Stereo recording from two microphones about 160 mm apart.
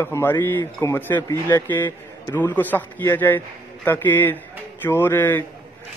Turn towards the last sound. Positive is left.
turn(degrees=15)  # may be behind; listen again after turning